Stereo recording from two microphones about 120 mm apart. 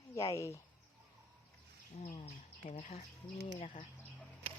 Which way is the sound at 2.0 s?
55° left (ahead or behind).